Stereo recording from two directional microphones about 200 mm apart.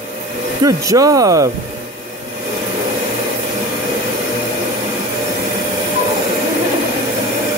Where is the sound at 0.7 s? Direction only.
15° right (ahead or behind).